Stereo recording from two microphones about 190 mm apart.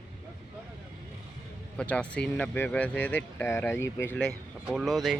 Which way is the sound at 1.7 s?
5° left (ahead or behind).